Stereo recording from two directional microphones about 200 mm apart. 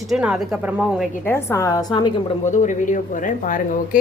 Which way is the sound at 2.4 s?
40° left (ahead or behind).